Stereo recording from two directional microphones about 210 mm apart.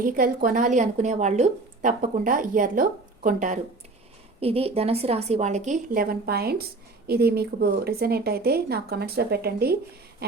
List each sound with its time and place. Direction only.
0.0 s a woman's voice: 40° right (ahead or behind)
4.4 s a woman's voice: 30° right (ahead or behind); by 9.7 s 50° right (ahead or behind)